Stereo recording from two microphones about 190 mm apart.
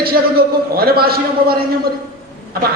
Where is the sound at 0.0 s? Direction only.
55° right (ahead or behind).